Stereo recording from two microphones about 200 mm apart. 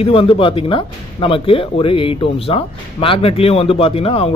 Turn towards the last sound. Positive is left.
turn(degrees=30)  # may be behind; listen again after turning